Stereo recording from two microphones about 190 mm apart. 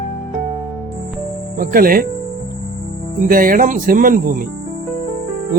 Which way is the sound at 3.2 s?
45° right (ahead or behind).